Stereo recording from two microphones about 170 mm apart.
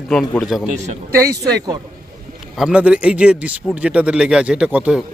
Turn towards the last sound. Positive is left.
turn(degrees=-5)  # may be behind; listen again after turning